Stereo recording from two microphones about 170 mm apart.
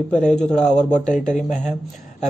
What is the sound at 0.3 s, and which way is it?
Speech, 5° left (ahead or behind).